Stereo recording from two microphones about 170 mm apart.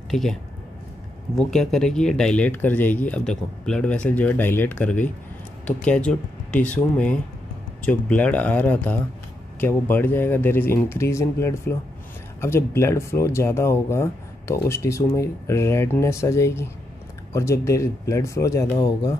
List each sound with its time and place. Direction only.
0.1 s speech: centre (ahead or behind); by 19.1 s 20° left (ahead or behind)